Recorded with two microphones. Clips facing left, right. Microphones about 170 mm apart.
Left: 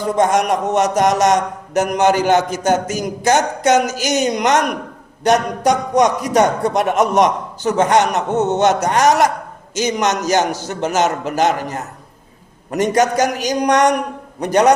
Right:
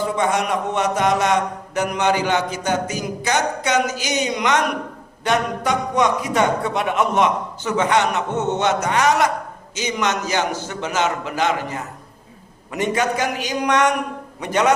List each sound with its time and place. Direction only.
0.2 s mantra: 45° left (ahead or behind)
5.2 s a man's voice: 40° left (ahead or behind)